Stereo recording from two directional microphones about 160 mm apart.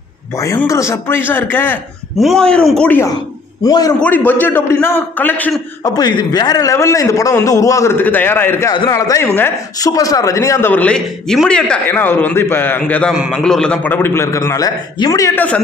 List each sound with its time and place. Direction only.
0.4 s speech: 20° left (ahead or behind)
2.1 s a man's voice: centre (ahead or behind)
3.6 s a man's voice: 20° left (ahead or behind)
4.0 s speech: 10° left (ahead or behind)
5.9 s a man's voice: 25° left (ahead or behind)
8.7 s speech: 25° left (ahead or behind)